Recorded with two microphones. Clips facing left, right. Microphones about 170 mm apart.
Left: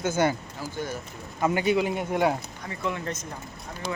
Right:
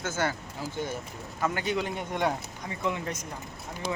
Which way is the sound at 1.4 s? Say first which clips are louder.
Left 6 dB; 15° left (ahead or behind).